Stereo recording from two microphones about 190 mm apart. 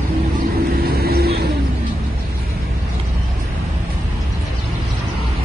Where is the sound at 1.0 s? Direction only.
55° right (ahead or behind).